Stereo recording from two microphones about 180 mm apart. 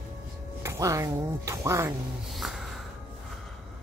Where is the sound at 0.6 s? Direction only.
15° right (ahead or behind).